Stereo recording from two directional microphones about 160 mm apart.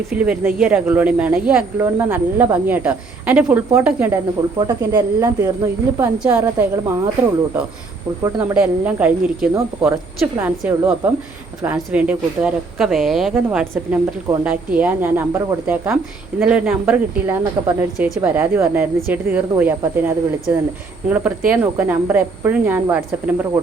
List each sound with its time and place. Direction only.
0.2 s speech: 10° right (ahead or behind)
8.2 s speech: 20° right (ahead or behind)